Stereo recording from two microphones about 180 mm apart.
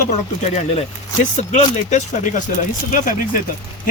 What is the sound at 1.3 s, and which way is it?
Speech, 40° left (ahead or behind).